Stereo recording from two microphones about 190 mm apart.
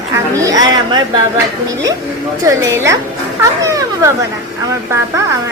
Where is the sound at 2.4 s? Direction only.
15° right (ahead or behind).